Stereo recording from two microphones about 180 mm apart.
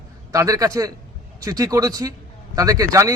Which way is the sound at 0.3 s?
20° right (ahead or behind).